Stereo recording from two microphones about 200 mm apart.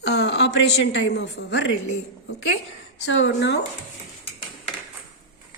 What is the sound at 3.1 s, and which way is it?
Speech, 70° left (ahead or behind).